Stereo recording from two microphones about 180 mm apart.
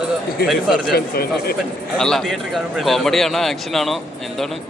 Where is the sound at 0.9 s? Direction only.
60° left (ahead or behind).